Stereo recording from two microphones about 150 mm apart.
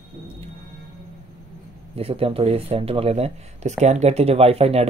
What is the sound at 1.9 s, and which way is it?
Speech, 40° right (ahead or behind).